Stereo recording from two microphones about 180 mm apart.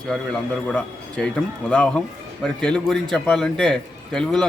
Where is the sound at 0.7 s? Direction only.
5° left (ahead or behind).